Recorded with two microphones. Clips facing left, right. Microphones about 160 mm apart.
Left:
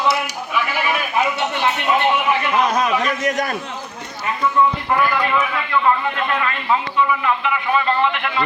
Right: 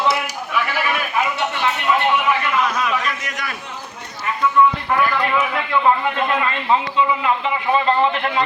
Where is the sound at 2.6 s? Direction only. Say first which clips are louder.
Left 3 dB; 40° left (ahead or behind).